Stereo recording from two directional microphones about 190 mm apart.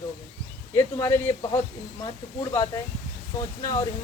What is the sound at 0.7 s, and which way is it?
Speech, 15° left (ahead or behind).